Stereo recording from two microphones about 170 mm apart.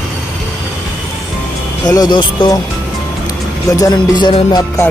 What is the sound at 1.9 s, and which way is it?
Music, 25° left (ahead or behind).